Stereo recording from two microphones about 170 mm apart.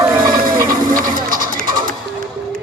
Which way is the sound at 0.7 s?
55° right (ahead or behind).